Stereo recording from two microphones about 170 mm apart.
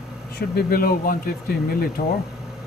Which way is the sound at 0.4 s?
65° left (ahead or behind).